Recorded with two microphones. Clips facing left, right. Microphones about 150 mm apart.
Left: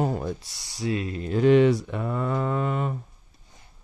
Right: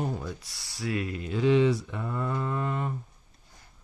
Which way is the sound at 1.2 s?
50° left (ahead or behind).